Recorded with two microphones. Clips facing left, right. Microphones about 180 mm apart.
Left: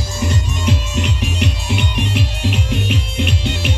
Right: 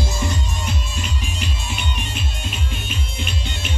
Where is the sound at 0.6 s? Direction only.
70° left (ahead or behind).